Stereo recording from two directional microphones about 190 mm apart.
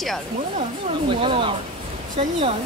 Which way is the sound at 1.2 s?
30° right (ahead or behind).